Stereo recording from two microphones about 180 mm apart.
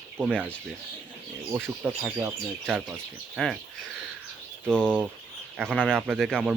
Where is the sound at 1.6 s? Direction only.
5° right (ahead or behind).